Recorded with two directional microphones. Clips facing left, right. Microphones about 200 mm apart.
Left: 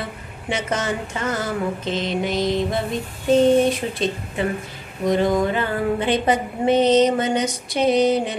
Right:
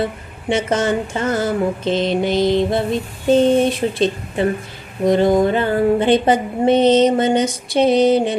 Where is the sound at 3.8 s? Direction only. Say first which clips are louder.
Right 7 dB; 40° right (ahead or behind).